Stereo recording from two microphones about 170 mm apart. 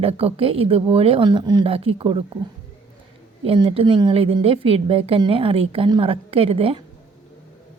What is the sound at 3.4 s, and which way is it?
A woman's voice, 30° right (ahead or behind).